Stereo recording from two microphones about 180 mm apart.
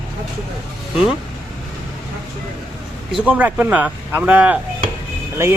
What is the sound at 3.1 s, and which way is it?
Speech, 5° right (ahead or behind).